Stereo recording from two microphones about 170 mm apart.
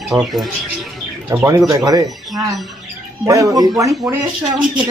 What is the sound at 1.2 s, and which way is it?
Speech, 15° right (ahead or behind).